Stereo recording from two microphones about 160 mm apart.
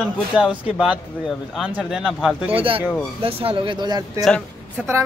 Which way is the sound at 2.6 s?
35° right (ahead or behind).